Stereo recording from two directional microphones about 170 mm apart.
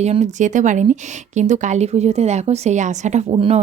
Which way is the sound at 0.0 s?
40° right (ahead or behind).